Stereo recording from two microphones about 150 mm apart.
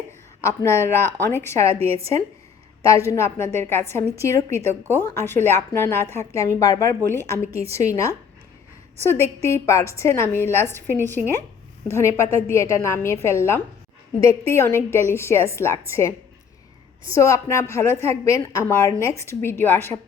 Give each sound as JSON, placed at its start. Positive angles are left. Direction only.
{"t": 0.4, "sound": "a woman's voice", "side_deg": 15}
{"t": 2.8, "sound": "a woman's voice", "side_deg": 20}
{"t": 9.0, "sound": "a woman's voice", "side_deg": 15}
{"t": 17.2, "sound": "a woman's voice", "side_deg": 20}